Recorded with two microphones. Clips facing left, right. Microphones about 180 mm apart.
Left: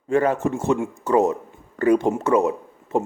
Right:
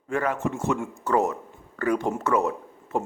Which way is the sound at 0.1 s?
30° left (ahead or behind).